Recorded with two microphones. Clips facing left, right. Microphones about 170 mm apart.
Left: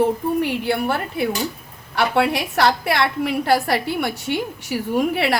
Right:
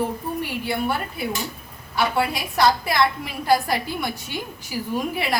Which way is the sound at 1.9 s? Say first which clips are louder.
Left 4 dB; 65° left (ahead or behind).